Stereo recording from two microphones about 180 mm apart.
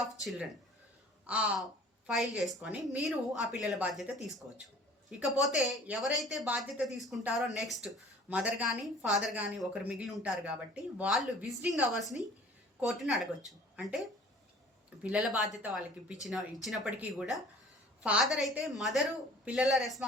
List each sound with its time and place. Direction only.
0.2 s speech: centre (ahead or behind)
15.1 s speech: centre (ahead or behind)